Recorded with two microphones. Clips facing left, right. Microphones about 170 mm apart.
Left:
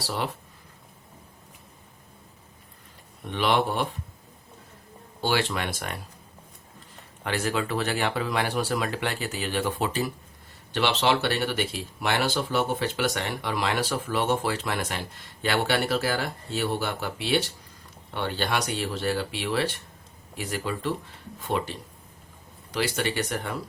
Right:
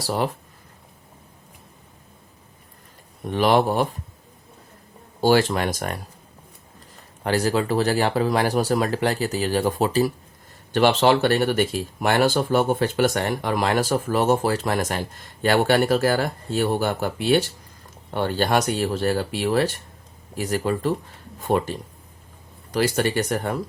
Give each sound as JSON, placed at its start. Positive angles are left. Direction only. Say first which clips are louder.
{"t": 0.0, "sound": "speech", "louder": "right 6 dB", "side_deg": -45}
{"t": 3.2, "sound": "speech", "louder": "right 6 dB", "side_deg": -40}
{"t": 5.2, "sound": "speech", "louder": "right 8 dB", "side_deg": -40}
{"t": 7.3, "sound": "speech", "louder": "right 6 dB", "side_deg": -35}